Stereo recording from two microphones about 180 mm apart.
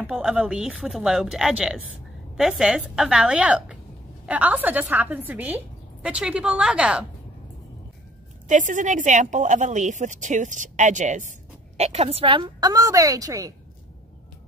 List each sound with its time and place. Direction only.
0.0 s a woman's voice: 5° right (ahead or behind)
8.5 s a woman's voice: 45° right (ahead or behind); by 13.5 s 20° right (ahead or behind)